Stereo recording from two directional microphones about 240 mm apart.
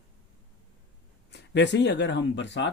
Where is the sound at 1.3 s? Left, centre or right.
Left.